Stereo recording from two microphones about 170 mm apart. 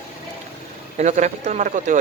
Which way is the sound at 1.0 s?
45° right (ahead or behind).